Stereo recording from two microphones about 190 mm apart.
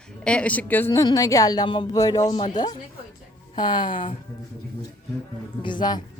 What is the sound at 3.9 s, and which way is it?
Speech, 45° left (ahead or behind).